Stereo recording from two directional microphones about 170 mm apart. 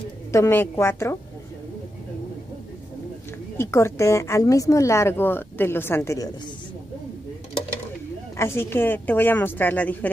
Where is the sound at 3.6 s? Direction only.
15° left (ahead or behind).